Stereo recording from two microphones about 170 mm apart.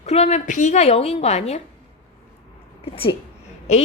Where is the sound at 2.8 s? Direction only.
35° left (ahead or behind).